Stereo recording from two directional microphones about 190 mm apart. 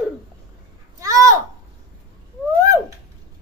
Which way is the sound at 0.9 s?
15° right (ahead or behind).